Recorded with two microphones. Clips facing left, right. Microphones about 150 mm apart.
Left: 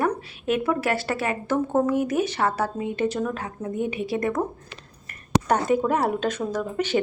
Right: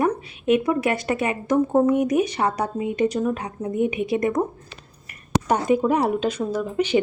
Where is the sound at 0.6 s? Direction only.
15° right (ahead or behind).